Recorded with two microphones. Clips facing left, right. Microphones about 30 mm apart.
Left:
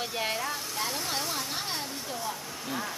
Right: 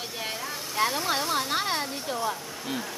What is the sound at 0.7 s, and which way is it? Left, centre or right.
Speech, right.